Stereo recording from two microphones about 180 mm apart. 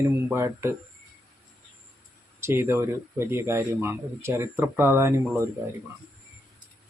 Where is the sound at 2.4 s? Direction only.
15° right (ahead or behind).